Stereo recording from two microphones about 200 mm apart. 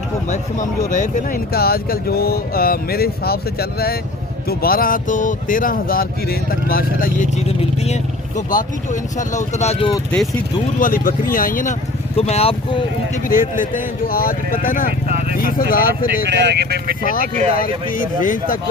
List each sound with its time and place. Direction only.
0.9 s speech: 40° left (ahead or behind)
8.4 s speech: 40° left (ahead or behind)
10.1 s speech: 5° left (ahead or behind)
10.8 s speech: 45° left (ahead or behind)
13.2 s speech: 45° left (ahead or behind)
16.3 s speech: 60° right (ahead or behind)
17.0 s speech: 45° left (ahead or behind)